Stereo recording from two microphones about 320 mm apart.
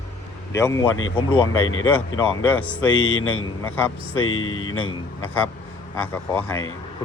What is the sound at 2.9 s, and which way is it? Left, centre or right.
Speech, left.